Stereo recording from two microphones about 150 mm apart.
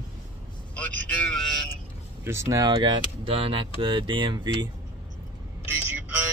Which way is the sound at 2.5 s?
25° right (ahead or behind).